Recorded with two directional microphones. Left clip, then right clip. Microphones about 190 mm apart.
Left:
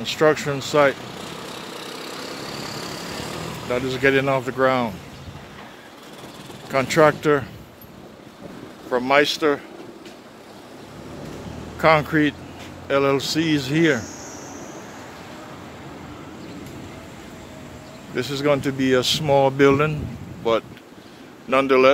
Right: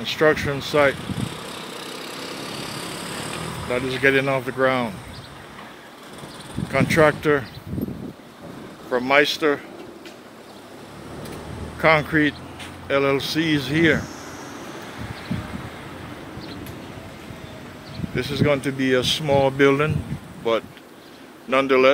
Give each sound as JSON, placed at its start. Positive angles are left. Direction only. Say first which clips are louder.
{"t": 0.0, "sound": "speech", "louder": "even", "side_deg": 10}
{"t": 1.1, "sound": "vehicle", "louder": "right 1 dB", "side_deg": 45}
{"t": 3.6, "sound": "speech", "louder": "even", "side_deg": 10}
{"t": 6.7, "sound": "speech", "louder": "left 1 dB", "side_deg": 10}
{"t": 8.9, "sound": "speech", "louder": "even", "side_deg": 10}
{"t": 11.8, "sound": "speech", "louder": "left 1 dB", "side_deg": 10}
{"t": 18.1, "sound": "speech", "louder": "left 1 dB", "side_deg": 15}